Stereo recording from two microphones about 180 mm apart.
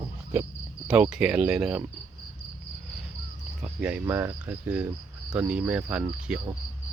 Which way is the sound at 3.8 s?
10° right (ahead or behind).